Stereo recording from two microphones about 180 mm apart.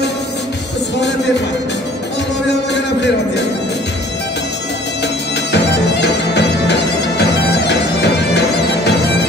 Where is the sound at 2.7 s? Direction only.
70° left (ahead or behind).